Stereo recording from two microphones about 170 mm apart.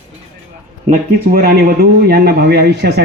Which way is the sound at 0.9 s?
60° right (ahead or behind).